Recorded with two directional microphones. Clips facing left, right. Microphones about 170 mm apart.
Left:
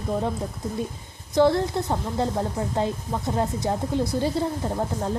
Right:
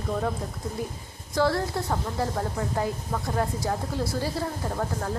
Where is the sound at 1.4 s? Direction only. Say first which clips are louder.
Left 5 dB; 20° left (ahead or behind).